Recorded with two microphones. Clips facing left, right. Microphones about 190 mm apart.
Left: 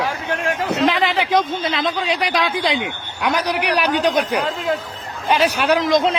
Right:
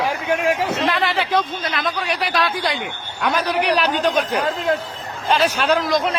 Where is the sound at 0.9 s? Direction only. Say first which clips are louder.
Left 2 dB; 15° left (ahead or behind).